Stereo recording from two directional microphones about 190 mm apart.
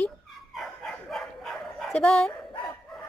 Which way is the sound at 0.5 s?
Centre (ahead or behind).